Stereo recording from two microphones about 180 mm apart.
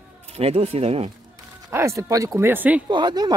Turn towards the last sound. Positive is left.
turn(degrees=-25)  # may be behind; listen again after turning